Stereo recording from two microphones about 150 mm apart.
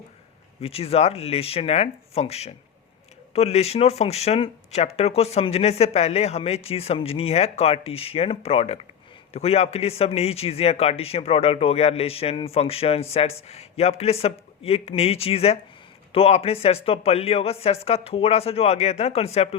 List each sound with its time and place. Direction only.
0.6 s a man's voice: 40° left (ahead or behind)